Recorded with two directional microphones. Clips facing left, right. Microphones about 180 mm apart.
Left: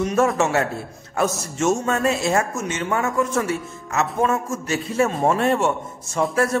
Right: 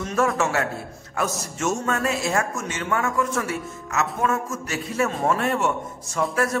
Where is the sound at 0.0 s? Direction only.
25° left (ahead or behind).